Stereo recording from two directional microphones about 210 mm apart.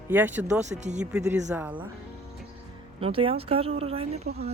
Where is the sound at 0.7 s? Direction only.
35° right (ahead or behind).